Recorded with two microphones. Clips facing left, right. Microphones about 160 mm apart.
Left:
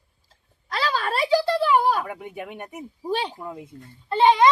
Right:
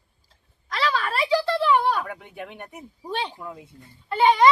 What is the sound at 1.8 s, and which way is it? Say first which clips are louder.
Speech: left 2 dB; 5° left (ahead or behind).